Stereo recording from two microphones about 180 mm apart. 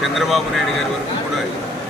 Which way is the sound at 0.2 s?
Centre (ahead or behind).